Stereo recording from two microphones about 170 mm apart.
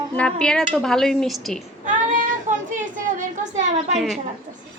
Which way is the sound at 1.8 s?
50° right (ahead or behind).